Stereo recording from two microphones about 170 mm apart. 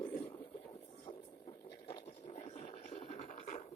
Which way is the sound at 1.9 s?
35° left (ahead or behind).